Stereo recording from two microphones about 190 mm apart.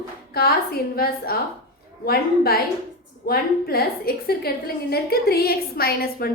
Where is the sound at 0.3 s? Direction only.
55° left (ahead or behind).